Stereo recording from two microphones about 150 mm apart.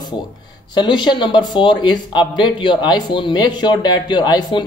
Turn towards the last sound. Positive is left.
turn(degrees=30)  # may be behind; listen again after turning